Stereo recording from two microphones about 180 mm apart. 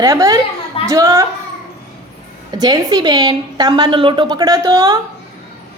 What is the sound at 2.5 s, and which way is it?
A woman's voice, 20° right (ahead or behind).